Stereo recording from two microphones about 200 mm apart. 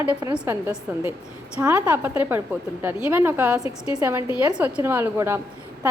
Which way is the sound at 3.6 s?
30° left (ahead or behind).